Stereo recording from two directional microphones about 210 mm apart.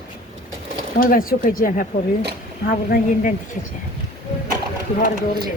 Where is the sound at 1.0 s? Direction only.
40° left (ahead or behind).